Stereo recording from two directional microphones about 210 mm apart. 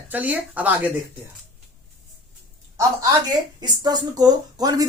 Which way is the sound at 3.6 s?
20° right (ahead or behind).